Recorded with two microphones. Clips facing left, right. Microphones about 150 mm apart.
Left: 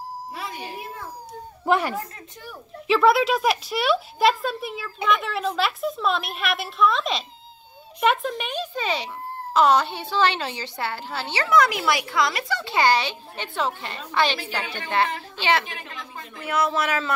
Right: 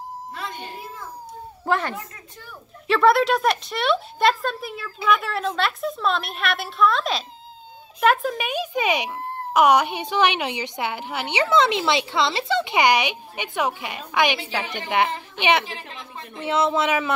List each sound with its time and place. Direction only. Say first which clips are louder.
0.3 s music: even; 5° left (ahead or behind)
1.7 s a child's voice: left 2 dB; 15° left (ahead or behind)
2.9 s a woman's voice: right 1 dB; centre (ahead or behind); by 17.1 s 20° right (ahead or behind)